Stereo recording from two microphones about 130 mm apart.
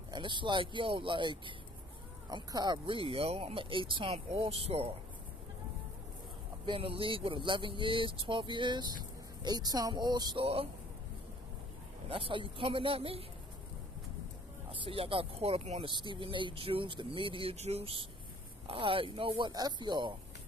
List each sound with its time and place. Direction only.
0.1 s speech: 35° right (ahead or behind)
6.6 s speech: 45° right (ahead or behind)
10.4 s speech: 50° right (ahead or behind)
12.1 s speech: 45° right (ahead or behind)
14.7 s speech: 45° right (ahead or behind)
15.8 s speech: 40° right (ahead or behind)